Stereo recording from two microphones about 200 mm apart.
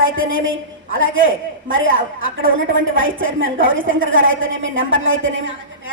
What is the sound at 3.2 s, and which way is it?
A woman's voice, 75° right (ahead or behind).